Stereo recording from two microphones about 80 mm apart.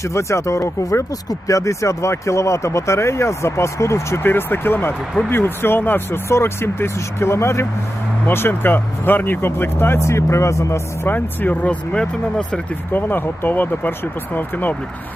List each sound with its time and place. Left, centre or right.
0.0 s speech: left
11.1 s speech: left
12.9 s speech: left